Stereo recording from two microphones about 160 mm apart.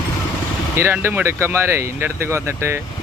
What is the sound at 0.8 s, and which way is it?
Speech, 15° right (ahead or behind).